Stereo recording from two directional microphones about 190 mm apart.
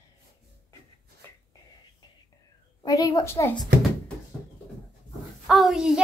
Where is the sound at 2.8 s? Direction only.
20° left (ahead or behind).